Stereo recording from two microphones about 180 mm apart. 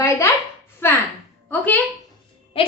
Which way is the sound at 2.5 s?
30° left (ahead or behind).